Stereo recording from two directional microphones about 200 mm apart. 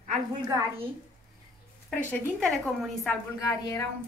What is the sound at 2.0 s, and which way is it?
A woman's voice, 10° left (ahead or behind).